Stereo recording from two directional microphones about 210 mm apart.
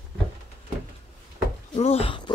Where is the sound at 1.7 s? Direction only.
30° left (ahead or behind).